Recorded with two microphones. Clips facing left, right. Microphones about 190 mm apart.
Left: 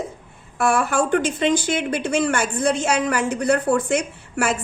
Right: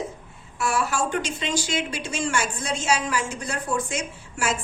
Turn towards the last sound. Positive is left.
turn(degrees=60)  # may be behind; listen again after turning